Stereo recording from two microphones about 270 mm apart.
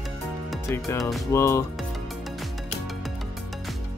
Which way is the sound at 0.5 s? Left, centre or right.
Centre.